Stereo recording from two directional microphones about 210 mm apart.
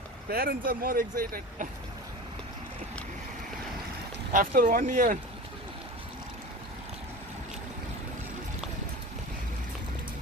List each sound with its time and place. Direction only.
0.3 s speech: 45° right (ahead or behind)
4.3 s speech: 40° right (ahead or behind)